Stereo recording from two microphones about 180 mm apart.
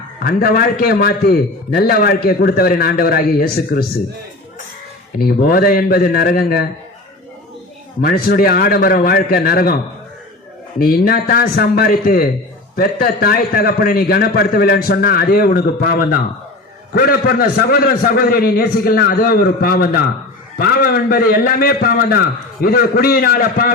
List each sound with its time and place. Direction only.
0.2 s a man's voice: 55° left (ahead or behind)
5.1 s a man's voice: 55° left (ahead or behind)
8.0 s a man's voice: 55° left (ahead or behind)
10.8 s a man's voice: 55° left (ahead or behind)